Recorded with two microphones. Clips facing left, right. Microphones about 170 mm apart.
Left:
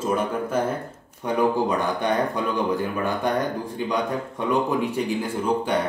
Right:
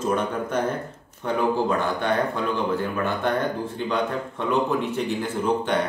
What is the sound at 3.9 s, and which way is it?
A man's voice, 10° left (ahead or behind).